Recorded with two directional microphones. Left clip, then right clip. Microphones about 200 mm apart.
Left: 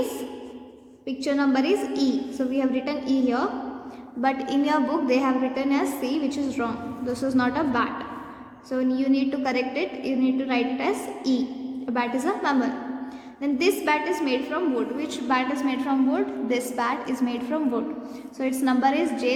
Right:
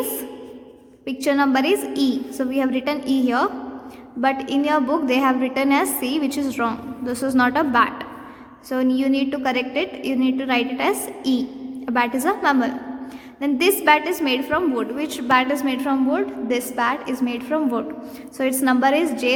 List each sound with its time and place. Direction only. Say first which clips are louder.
1.0 s a woman's voice: right 5 dB; 40° right (ahead or behind)